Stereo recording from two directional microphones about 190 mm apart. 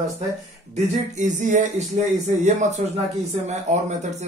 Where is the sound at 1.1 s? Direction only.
40° right (ahead or behind).